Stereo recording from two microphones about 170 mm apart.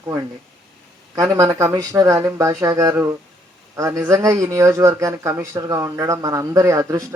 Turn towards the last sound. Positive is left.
turn(degrees=-20)  # may be behind; listen again after turning